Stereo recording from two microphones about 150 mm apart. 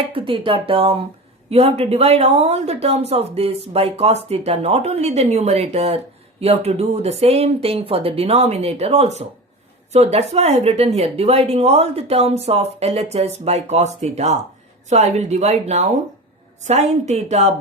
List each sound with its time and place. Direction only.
0.0 s speech: 35° right (ahead or behind)